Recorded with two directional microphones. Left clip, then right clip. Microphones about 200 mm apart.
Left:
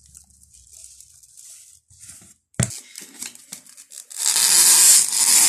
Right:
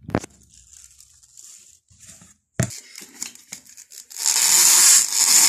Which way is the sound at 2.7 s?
Centre (ahead or behind).